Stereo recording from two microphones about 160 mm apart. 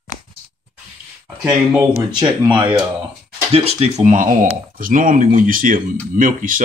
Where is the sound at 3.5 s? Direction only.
40° right (ahead or behind).